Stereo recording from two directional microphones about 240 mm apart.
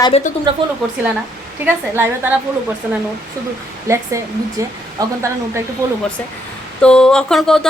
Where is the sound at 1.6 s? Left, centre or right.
Centre.